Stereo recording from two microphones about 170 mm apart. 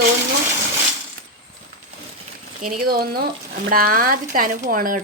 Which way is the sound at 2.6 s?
55° right (ahead or behind).